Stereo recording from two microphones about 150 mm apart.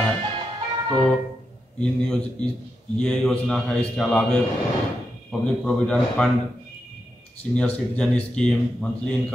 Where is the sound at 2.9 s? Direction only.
5° left (ahead or behind).